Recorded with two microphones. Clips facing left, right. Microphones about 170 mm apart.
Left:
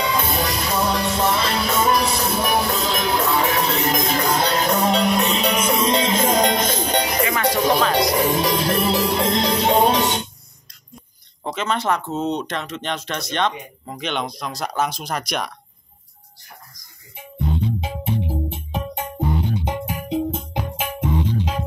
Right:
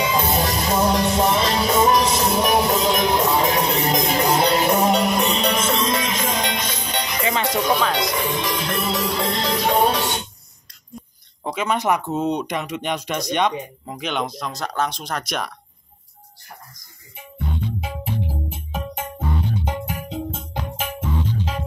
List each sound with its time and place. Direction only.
0.1 s music: 20° right (ahead or behind); by 5.8 s 5° left (ahead or behind)
5.8 s music: 25° left (ahead or behind)
11.4 s speech: 10° right (ahead or behind)
17.6 s music: 25° left (ahead or behind)